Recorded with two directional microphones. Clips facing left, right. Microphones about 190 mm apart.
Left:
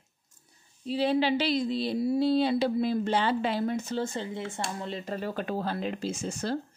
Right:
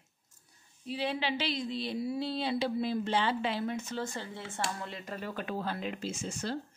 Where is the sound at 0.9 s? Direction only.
35° left (ahead or behind).